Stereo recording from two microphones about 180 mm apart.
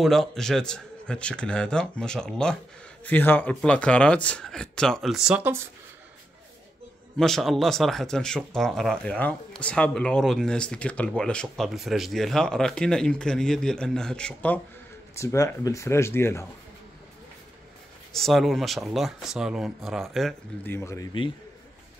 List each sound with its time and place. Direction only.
0.0 s speech: centre (ahead or behind)
7.2 s speech: centre (ahead or behind)
15.1 s speech: 15° left (ahead or behind)
18.1 s speech: centre (ahead or behind)
20.6 s speech: 15° left (ahead or behind)